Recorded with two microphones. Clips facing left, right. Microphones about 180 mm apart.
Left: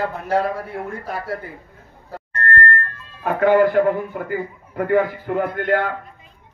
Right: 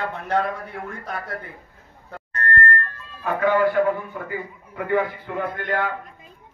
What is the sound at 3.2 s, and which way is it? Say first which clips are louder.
A man's voice: left 4 dB; 50° left (ahead or behind).